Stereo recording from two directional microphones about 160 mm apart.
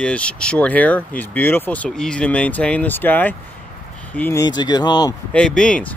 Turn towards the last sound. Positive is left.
turn(degrees=5)  # may be behind; listen again after turning